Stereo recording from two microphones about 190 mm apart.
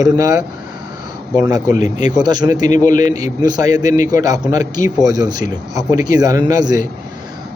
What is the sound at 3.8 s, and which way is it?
Speech, 45° left (ahead or behind).